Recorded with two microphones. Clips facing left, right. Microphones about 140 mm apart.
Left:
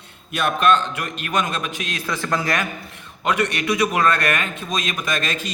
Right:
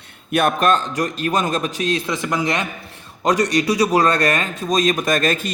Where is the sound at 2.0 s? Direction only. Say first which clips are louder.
Right 2 dB; 20° right (ahead or behind).